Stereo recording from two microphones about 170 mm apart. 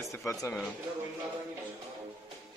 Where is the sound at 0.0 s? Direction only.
15° left (ahead or behind).